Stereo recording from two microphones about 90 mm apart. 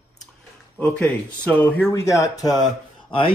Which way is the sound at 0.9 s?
15° left (ahead or behind).